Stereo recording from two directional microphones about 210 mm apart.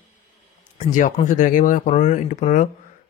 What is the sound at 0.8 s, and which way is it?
Speech, 35° left (ahead or behind).